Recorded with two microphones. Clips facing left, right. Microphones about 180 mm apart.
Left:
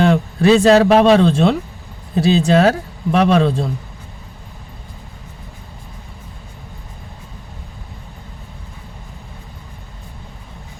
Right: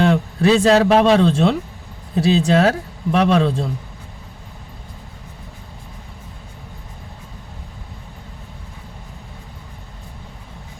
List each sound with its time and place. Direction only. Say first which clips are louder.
0.0 s speech: left 2 dB; 65° left (ahead or behind)